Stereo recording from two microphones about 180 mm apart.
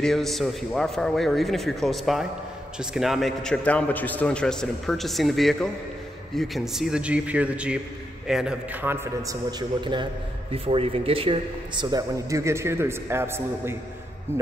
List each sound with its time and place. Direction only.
0.0 s a man's voice: centre (ahead or behind); by 14.4 s 15° right (ahead or behind)